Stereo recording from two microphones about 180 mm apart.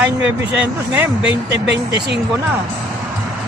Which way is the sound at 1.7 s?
70° right (ahead or behind).